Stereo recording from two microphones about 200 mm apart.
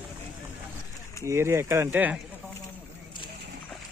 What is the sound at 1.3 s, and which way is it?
Speech, 15° right (ahead or behind).